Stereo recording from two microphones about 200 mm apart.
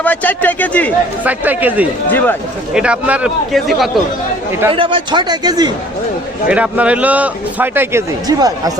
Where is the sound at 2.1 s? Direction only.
10° left (ahead or behind).